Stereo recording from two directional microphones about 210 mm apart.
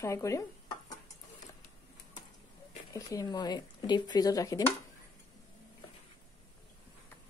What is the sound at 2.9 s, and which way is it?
Speech, 15° left (ahead or behind).